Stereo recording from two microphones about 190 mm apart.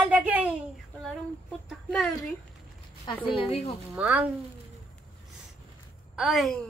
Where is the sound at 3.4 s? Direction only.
30° left (ahead or behind).